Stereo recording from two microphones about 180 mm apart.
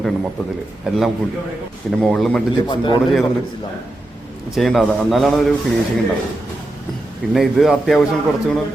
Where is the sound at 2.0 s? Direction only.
Centre (ahead or behind).